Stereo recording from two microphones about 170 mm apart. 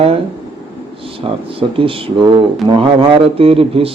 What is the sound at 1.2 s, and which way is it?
Speech, 30° right (ahead or behind).